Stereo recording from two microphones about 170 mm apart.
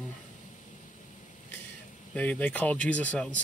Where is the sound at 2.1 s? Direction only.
10° left (ahead or behind).